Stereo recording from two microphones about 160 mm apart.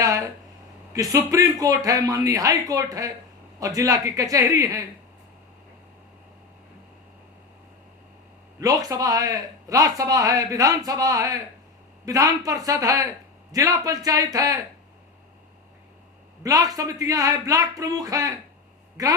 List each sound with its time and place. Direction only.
0.0 s a sound: 20° right (ahead or behind)
0.9 s speech: 20° right (ahead or behind)
8.6 s speech: 20° right (ahead or behind)
16.4 s speech: 20° right (ahead or behind)